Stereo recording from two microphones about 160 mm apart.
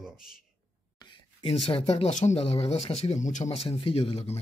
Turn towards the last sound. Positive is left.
turn(degrees=40)  # may be behind; listen again after turning